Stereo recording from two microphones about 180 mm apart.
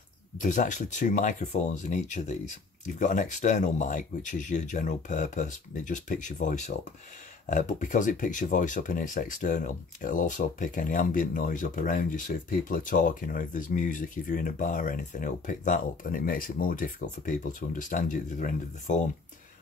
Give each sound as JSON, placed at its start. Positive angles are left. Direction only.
{"t": 0.4, "sound": "speech", "side_deg": 45}